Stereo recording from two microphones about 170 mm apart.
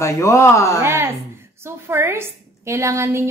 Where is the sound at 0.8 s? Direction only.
15° right (ahead or behind).